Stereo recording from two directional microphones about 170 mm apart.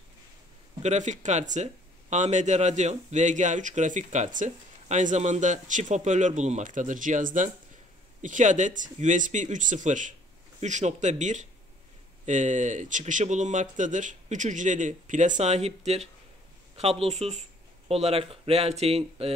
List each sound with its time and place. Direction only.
0.8 s speech: 45° right (ahead or behind)